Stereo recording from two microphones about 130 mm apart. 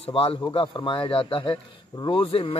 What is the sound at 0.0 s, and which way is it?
Speech, 45° left (ahead or behind).